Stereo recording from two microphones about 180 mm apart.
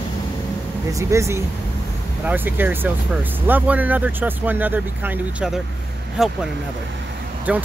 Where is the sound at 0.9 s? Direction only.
15° right (ahead or behind).